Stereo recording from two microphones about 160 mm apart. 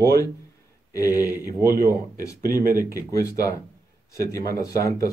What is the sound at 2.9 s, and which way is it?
Speech, 20° left (ahead or behind).